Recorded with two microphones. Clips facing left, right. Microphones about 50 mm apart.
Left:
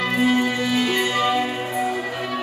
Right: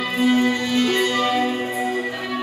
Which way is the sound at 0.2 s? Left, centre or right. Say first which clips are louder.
Right 3 dB; centre.